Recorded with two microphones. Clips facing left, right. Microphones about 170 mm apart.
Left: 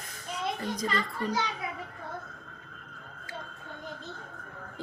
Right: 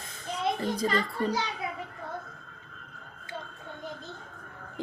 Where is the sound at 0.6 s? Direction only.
30° right (ahead or behind).